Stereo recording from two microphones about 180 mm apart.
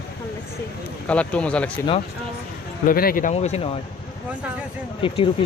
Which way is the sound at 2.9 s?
55° left (ahead or behind).